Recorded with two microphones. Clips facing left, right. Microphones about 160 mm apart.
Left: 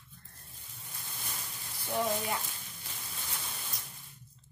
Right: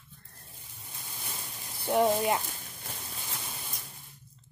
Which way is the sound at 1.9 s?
75° right (ahead or behind).